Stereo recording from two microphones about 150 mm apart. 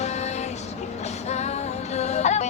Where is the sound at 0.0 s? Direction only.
50° left (ahead or behind).